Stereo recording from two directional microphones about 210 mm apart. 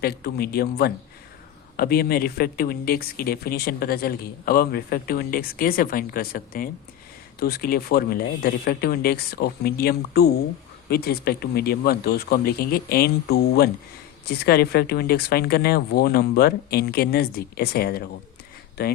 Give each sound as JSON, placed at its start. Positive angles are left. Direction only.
{"t": 0.0, "sound": "speech", "side_deg": 50}